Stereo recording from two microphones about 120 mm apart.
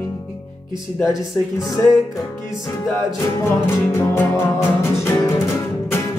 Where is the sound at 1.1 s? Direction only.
30° left (ahead or behind).